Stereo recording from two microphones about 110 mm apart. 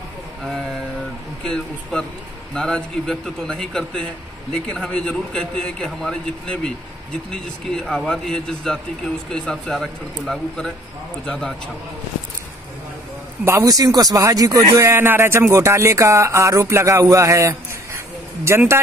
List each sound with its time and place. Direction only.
0.4 s vehicle: centre (ahead or behind)
1.4 s a man's voice: 5° left (ahead or behind)
13.5 s speech: 35° right (ahead or behind)